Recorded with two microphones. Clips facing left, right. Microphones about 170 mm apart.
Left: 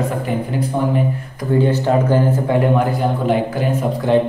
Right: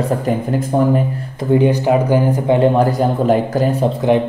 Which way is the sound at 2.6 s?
40° right (ahead or behind).